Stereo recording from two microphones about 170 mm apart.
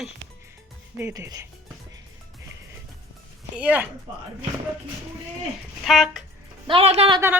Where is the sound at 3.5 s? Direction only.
10° right (ahead or behind).